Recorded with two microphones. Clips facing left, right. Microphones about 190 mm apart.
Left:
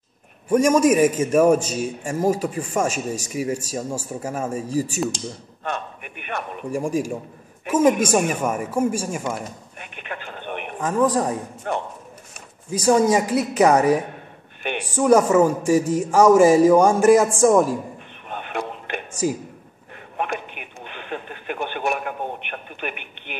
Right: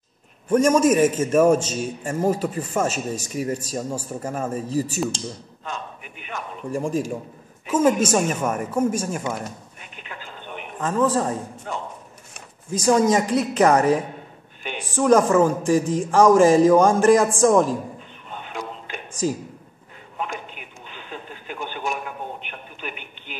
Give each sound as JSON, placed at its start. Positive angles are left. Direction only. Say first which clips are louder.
{"t": 0.5, "sound": "speech", "louder": "left 1 dB", "side_deg": 10}
{"t": 5.6, "sound": "a man's voice", "louder": "left 6 dB", "side_deg": 60}
{"t": 6.7, "sound": "speech", "louder": "left 1 dB", "side_deg": 10}
{"t": 9.8, "sound": "a sound", "louder": "left 5 dB", "side_deg": 60}
{"t": 10.8, "sound": "speech", "louder": "left 1 dB", "side_deg": 10}
{"t": 11.7, "sound": "speech", "louder": "left 6 dB", "side_deg": 60}
{"t": 12.7, "sound": "speech", "louder": "left 1 dB", "side_deg": 10}
{"t": 14.6, "sound": "a sound", "louder": "left 5 dB", "side_deg": 65}
{"t": 15.0, "sound": "speech", "louder": "left 1 dB", "side_deg": 10}
{"t": 18.3, "sound": "a sound", "louder": "left 4 dB", "side_deg": 65}
{"t": 20.2, "sound": "radio", "louder": "left 4 dB", "side_deg": 60}